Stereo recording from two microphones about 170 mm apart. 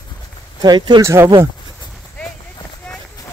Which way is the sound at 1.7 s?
5° right (ahead or behind).